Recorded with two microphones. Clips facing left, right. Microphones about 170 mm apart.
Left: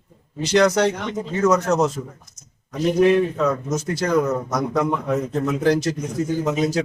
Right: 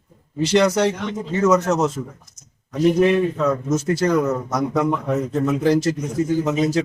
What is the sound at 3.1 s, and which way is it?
Speech, 5° right (ahead or behind).